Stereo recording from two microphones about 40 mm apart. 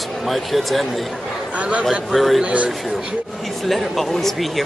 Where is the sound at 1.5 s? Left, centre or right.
Right.